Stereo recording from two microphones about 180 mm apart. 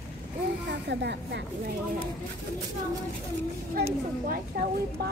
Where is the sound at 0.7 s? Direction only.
70° right (ahead or behind).